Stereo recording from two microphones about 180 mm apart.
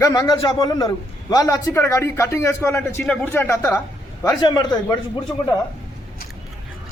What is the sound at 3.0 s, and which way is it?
A man's voice, 5° left (ahead or behind).